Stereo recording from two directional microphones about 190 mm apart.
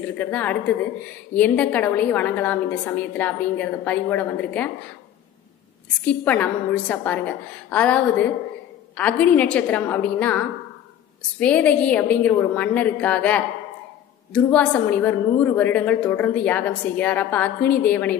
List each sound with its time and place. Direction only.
0.2 s a woman's voice: 10° left (ahead or behind)
6.0 s a woman's voice: 10° left (ahead or behind)